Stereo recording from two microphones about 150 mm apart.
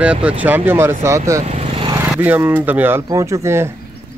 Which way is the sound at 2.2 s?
10° right (ahead or behind).